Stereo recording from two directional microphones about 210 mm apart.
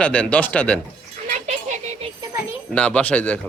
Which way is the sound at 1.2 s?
35° right (ahead or behind).